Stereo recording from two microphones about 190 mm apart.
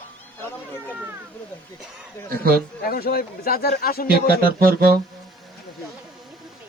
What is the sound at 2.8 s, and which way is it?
Speech, 55° left (ahead or behind).